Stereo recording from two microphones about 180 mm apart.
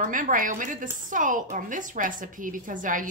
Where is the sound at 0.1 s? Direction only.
45° right (ahead or behind).